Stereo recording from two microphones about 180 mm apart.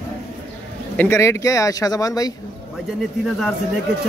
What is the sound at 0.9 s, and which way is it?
Speech, 15° left (ahead or behind).